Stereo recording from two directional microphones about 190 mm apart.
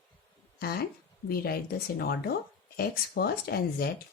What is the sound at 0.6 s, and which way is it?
Speech, 55° left (ahead or behind).